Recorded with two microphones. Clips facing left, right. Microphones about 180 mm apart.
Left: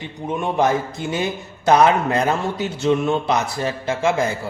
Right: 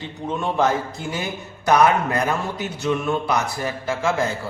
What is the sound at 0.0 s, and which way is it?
A man's voice, 15° left (ahead or behind).